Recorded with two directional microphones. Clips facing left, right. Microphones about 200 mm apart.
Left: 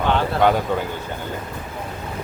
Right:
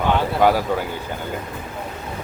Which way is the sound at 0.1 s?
10° right (ahead or behind).